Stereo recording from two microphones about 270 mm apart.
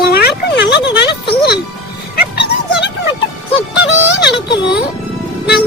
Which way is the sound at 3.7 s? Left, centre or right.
Left.